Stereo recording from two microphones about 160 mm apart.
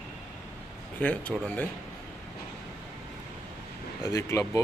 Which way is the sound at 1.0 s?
10° left (ahead or behind).